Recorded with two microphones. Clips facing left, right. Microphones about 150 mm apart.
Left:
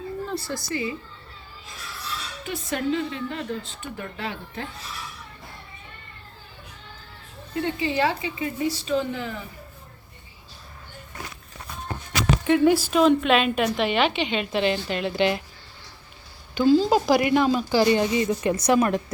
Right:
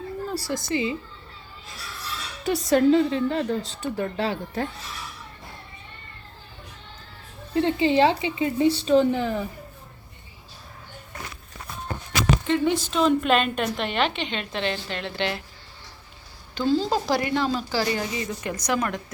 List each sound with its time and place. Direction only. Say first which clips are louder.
0.3 s a woman's voice: right 1 dB; 10° right (ahead or behind)
0.6 s a woman's voice: right 3 dB; 20° right (ahead or behind)
2.4 s speech: right 9 dB; 35° right (ahead or behind)
7.5 s a woman's voice: right 5 dB; 30° right (ahead or behind)
12.5 s a woman's voice: left 4 dB; 5° left (ahead or behind)
16.6 s speech: left 4 dB; 5° left (ahead or behind); by 19.0 s 25° left (ahead or behind)